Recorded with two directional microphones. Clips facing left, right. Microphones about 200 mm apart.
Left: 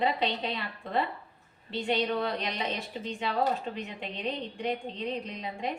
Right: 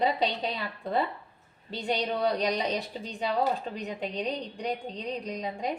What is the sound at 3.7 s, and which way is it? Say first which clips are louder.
A woman's voice: right 5 dB; 40° right (ahead or behind).